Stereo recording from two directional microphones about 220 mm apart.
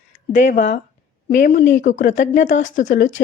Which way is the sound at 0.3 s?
35° left (ahead or behind).